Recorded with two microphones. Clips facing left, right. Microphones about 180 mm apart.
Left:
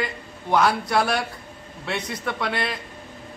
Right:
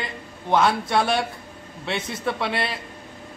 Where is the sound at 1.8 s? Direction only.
25° right (ahead or behind).